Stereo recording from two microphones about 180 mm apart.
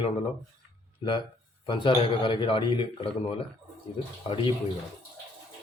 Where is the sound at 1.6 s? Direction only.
25° left (ahead or behind).